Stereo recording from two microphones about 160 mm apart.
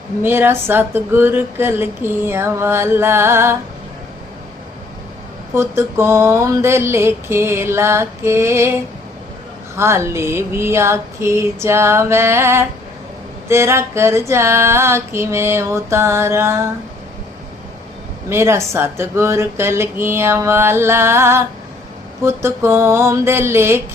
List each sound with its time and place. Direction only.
0.2 s speech: 15° right (ahead or behind)
5.5 s speech: 15° right (ahead or behind)
9.7 s speech: 15° right (ahead or behind)
18.3 s speech: 15° right (ahead or behind)